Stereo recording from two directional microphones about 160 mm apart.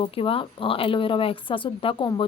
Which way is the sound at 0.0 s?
35° left (ahead or behind).